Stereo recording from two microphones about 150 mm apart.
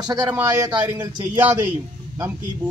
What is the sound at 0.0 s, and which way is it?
Speech, 25° right (ahead or behind).